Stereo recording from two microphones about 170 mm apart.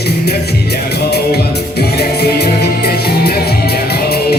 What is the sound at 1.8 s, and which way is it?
Music, 70° left (ahead or behind).